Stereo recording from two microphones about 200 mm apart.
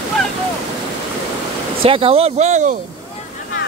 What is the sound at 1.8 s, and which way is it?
Speech, 25° right (ahead or behind).